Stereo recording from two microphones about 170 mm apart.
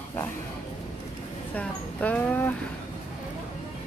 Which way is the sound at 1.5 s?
10° left (ahead or behind).